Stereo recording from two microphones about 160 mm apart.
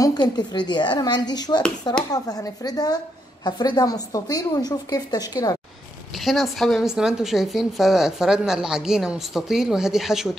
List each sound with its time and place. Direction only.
0.0 s a woman's voice: 25° left (ahead or behind)
6.1 s a woman's voice: centre (ahead or behind)